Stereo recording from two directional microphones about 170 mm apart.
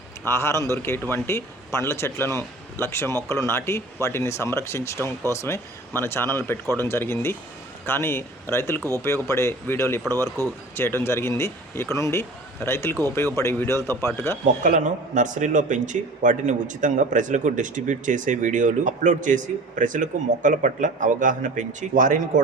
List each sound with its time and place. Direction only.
0.3 s speech: 15° left (ahead or behind)
14.4 s speech: 50° right (ahead or behind)